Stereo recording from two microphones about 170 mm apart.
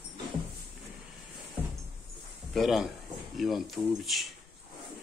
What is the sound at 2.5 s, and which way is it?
Speech, centre (ahead or behind).